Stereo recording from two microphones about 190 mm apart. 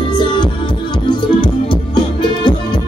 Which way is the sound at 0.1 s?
25° left (ahead or behind).